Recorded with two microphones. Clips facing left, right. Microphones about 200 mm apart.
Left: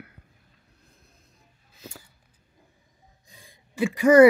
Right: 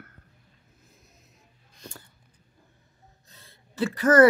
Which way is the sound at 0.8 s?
Centre (ahead or behind).